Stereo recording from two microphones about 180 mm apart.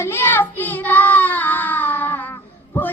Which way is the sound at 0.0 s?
15° left (ahead or behind).